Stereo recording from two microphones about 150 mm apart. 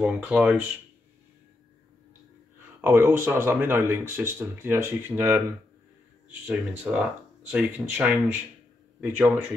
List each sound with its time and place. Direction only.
0.0 s speech: 10° right (ahead or behind)
2.8 s speech: 15° right (ahead or behind)
6.4 s speech: 10° right (ahead or behind)